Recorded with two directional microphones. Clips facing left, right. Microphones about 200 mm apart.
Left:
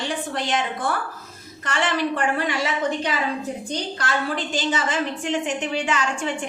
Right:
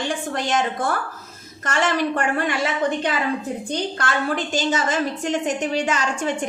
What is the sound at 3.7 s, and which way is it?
A woman's voice, 50° right (ahead or behind).